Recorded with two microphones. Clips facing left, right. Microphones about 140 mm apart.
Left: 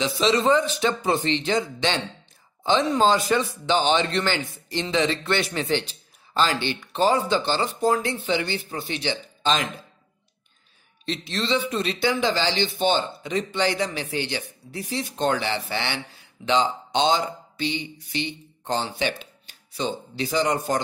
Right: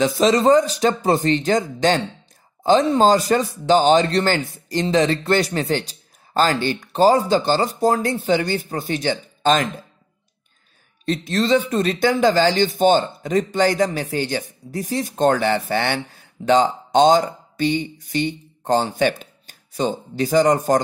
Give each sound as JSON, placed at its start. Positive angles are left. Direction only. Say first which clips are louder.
{"t": 0.0, "sound": "speech", "louder": "right 5 dB", "side_deg": -45}
{"t": 11.1, "sound": "speech", "louder": "right 7 dB", "side_deg": -45}